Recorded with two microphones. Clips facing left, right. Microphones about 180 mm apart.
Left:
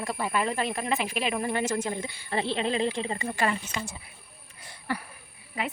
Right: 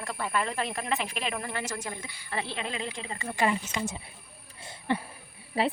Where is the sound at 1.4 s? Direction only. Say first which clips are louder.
Left 7 dB; 20° left (ahead or behind).